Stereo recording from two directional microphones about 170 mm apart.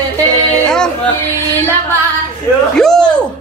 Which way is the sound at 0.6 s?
5° left (ahead or behind).